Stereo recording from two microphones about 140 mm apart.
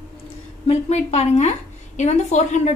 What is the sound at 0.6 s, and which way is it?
A woman's voice, 50° left (ahead or behind).